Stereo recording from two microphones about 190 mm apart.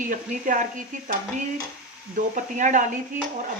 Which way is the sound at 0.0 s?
45° right (ahead or behind).